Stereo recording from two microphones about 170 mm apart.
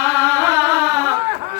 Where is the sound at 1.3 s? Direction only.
35° right (ahead or behind).